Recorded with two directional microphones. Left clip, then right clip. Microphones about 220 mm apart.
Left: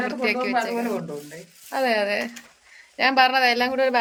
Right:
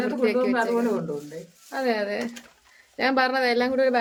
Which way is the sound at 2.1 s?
Centre (ahead or behind).